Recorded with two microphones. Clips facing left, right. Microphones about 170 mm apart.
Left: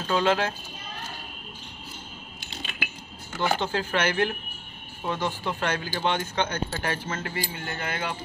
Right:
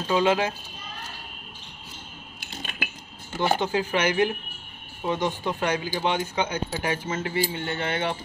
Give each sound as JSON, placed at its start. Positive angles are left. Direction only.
{"t": 0.1, "sound": "speech", "side_deg": -15}
{"t": 3.3, "sound": "a sound", "side_deg": -25}
{"t": 3.5, "sound": "speech", "side_deg": -15}